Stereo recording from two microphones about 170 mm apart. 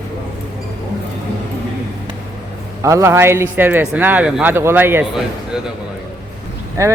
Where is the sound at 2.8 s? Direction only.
15° right (ahead or behind).